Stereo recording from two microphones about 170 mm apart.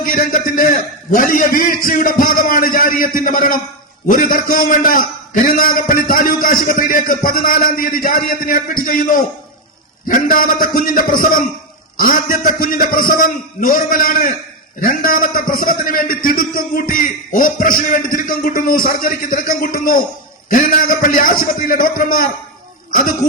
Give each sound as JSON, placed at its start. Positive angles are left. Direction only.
{"t": 0.0, "sound": "a man's voice", "side_deg": 55}
{"t": 22.9, "sound": "throat clearing", "side_deg": 55}